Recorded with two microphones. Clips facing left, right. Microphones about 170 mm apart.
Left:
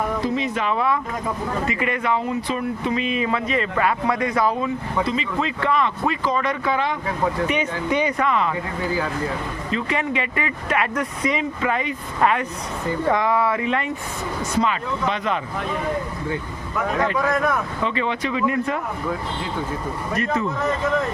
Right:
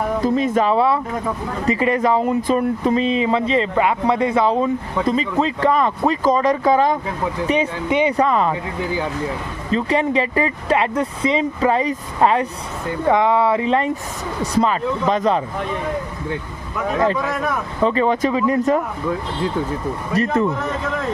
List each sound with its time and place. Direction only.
0.2 s speech: 45° right (ahead or behind); by 4.7 s 25° right (ahead or behind)
5.0 s speech: 40° right (ahead or behind)
7.9 s speech: 20° right (ahead or behind)
8.1 s speech: 35° right (ahead or behind)
9.7 s speech: 35° right (ahead or behind)
17.8 s speech: 40° right (ahead or behind)